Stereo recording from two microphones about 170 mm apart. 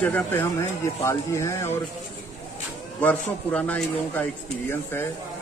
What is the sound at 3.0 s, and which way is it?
A man's voice, 10° left (ahead or behind).